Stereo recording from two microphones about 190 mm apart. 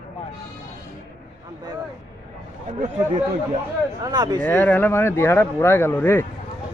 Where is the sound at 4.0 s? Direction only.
20° right (ahead or behind).